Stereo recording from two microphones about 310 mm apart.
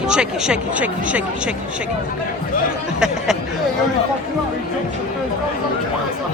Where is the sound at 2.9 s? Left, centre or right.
Centre.